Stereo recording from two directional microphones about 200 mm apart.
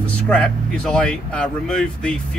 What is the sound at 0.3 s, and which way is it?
Speech, 5° left (ahead or behind).